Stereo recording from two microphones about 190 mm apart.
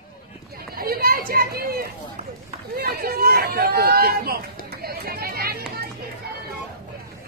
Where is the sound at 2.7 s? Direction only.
55° right (ahead or behind).